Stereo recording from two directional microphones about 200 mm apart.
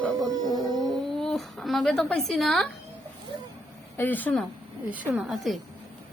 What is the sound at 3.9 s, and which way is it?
Speech, 10° left (ahead or behind).